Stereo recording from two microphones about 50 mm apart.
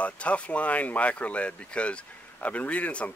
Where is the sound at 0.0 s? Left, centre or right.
Left.